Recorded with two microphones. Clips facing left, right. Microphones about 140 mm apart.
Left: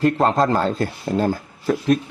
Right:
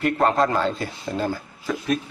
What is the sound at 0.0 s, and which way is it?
Speech, 30° left (ahead or behind).